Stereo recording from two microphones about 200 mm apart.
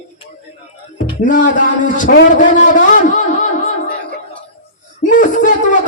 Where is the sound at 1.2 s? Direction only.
40° left (ahead or behind).